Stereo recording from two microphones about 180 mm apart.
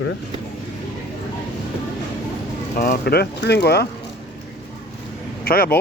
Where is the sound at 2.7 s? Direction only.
60° left (ahead or behind).